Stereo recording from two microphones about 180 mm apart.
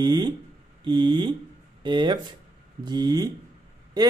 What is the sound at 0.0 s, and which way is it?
Speech, 25° right (ahead or behind).